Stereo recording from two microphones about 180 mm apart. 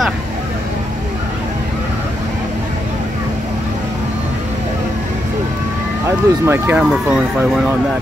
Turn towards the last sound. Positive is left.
turn(degrees=-5)  # may be behind; listen again after turning